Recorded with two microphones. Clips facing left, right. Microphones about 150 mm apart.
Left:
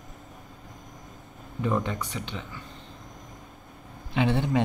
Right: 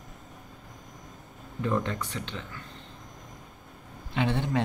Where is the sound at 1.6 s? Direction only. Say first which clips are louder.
Left 1 dB; 10° left (ahead or behind).